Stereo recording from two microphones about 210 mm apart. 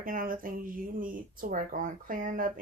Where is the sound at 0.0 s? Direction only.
40° right (ahead or behind).